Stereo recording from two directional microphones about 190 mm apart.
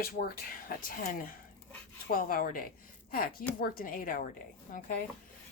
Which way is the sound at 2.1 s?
45° left (ahead or behind).